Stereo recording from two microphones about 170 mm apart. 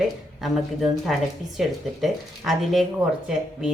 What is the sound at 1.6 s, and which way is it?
A woman's voice, centre (ahead or behind).